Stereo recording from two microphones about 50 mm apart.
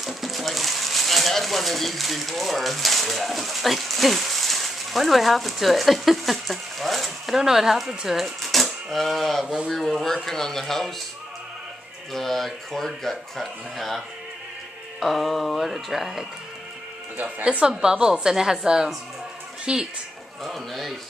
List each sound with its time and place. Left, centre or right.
0.0 s speech: centre
12.1 s speech: centre
17.2 s a woman's voice: right
20.4 s speech: centre